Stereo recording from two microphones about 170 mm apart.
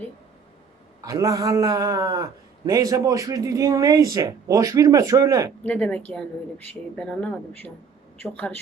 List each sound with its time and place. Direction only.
1.0 s a man's voice: 20° right (ahead or behind)
5.6 s speech: 10° left (ahead or behind)